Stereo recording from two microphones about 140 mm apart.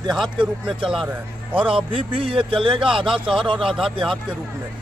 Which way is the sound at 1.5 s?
40° right (ahead or behind).